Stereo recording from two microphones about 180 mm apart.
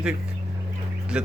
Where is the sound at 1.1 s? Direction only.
5° right (ahead or behind).